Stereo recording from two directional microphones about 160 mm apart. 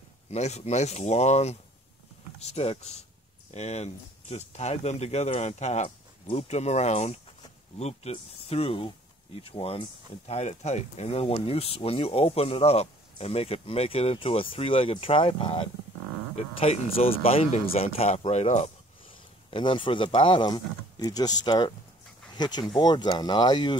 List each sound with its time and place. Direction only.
0.3 s speech: 45° left (ahead or behind)
19.5 s speech: 30° left (ahead or behind)